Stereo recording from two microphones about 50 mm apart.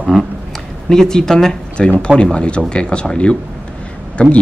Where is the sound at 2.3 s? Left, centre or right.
Left.